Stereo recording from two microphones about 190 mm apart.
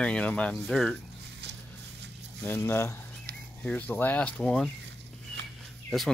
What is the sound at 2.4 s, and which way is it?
Speech, 10° left (ahead or behind).